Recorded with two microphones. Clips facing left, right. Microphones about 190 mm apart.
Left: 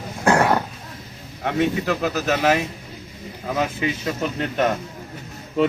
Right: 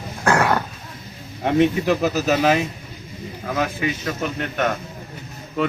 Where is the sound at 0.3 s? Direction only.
20° left (ahead or behind).